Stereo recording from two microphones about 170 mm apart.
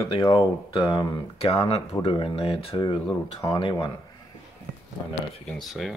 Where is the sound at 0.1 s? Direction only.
30° left (ahead or behind).